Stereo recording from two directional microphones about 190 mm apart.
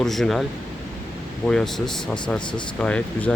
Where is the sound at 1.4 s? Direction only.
5° left (ahead or behind).